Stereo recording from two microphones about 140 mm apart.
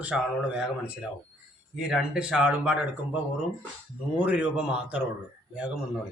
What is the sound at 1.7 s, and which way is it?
A man's voice, 5° right (ahead or behind).